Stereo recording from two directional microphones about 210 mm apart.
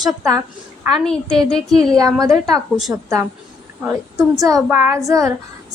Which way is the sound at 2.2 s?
15° right (ahead or behind).